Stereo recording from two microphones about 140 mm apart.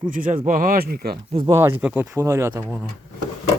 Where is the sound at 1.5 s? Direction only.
15° right (ahead or behind).